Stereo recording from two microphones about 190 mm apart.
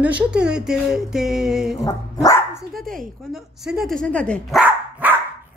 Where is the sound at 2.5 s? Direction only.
Centre (ahead or behind).